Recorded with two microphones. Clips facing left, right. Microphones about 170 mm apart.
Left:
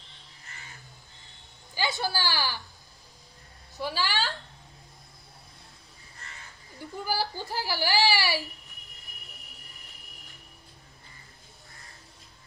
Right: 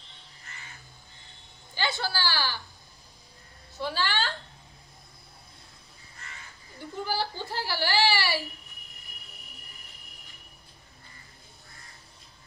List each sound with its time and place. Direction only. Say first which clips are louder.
1.8 s a woman's voice: left 1 dB; 15° left (ahead or behind)
3.7 s a woman's voice: even; 10° left (ahead or behind)
7.1 s whimper: left 1 dB; 10° left (ahead or behind)